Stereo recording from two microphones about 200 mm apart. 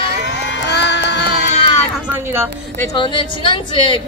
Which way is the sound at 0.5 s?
60° left (ahead or behind).